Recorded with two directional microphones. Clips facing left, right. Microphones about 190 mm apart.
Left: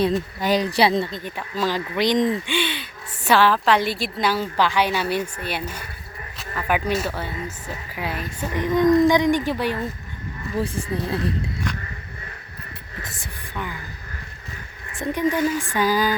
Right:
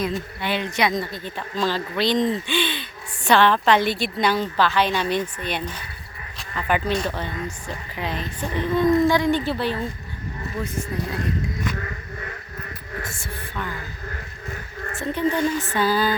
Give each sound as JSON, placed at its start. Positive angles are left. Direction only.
{"t": 0.4, "sound": "speech", "side_deg": 40}
{"t": 1.1, "sound": "a woman's voice", "side_deg": 10}
{"t": 10.6, "sound": "speech", "side_deg": 30}
{"t": 14.9, "sound": "a woman's voice", "side_deg": 15}